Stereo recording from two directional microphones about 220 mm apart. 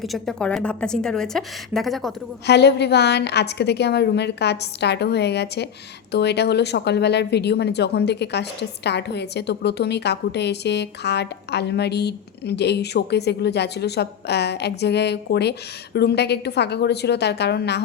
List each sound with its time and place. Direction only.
0.0 s a woman's voice: centre (ahead or behind)
2.5 s speech: 50° left (ahead or behind)